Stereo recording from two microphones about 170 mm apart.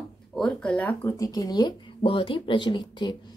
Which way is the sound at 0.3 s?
5° left (ahead or behind).